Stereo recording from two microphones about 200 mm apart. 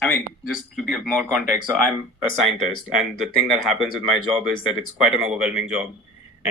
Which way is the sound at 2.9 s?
Centre (ahead or behind).